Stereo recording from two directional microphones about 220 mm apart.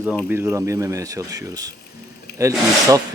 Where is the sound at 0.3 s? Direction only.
10° right (ahead or behind).